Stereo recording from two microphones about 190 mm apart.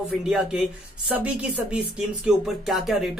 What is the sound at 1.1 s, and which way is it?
Speech, 5° right (ahead or behind).